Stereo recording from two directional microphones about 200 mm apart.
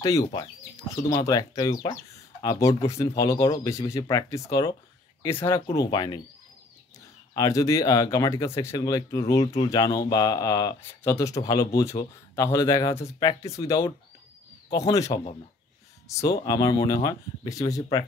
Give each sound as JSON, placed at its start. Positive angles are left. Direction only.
{"t": 0.0, "sound": "speech", "side_deg": 20}
{"t": 5.8, "sound": "speech", "side_deg": 20}
{"t": 7.3, "sound": "speech", "side_deg": 15}